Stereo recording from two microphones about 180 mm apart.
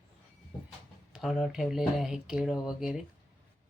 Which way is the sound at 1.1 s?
Centre (ahead or behind).